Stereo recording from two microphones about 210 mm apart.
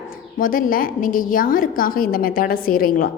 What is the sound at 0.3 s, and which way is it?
A woman's voice, 40° left (ahead or behind).